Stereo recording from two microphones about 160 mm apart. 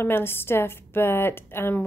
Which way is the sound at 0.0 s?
15° left (ahead or behind).